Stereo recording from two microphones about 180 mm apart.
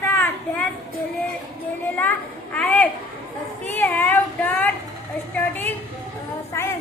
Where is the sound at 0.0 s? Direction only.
10° left (ahead or behind).